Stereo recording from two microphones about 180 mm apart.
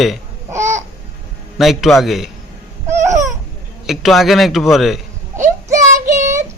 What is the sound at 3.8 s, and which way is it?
A man's voice, centre (ahead or behind).